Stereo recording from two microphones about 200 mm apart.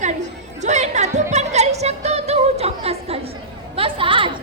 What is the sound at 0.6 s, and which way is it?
Music, 35° right (ahead or behind).